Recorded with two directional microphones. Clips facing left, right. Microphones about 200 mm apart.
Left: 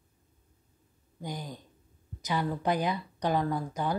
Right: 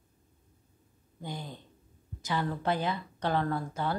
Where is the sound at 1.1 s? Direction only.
15° left (ahead or behind).